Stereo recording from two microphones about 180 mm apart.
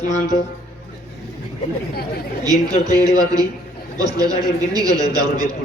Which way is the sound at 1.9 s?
60° left (ahead or behind).